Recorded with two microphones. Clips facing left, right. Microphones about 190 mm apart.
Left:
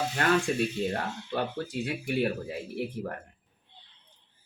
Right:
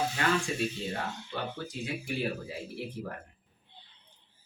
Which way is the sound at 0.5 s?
55° left (ahead or behind).